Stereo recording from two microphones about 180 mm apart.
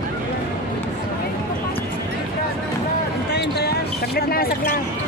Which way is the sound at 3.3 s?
65° left (ahead or behind).